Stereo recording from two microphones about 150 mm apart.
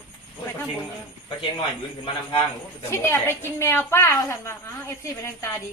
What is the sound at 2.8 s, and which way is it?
A woman's voice, 20° left (ahead or behind).